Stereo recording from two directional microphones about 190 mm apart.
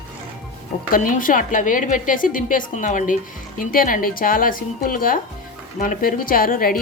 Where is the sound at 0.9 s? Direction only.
45° left (ahead or behind).